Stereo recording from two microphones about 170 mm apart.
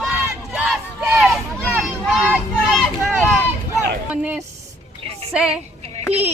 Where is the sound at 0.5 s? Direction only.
5° right (ahead or behind).